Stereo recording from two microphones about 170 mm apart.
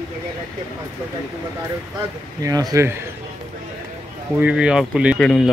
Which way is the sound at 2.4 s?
20° right (ahead or behind).